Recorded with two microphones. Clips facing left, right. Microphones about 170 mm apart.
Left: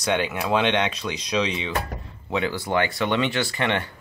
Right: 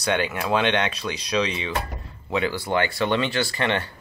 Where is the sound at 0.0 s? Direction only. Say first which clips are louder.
Even; 15° left (ahead or behind).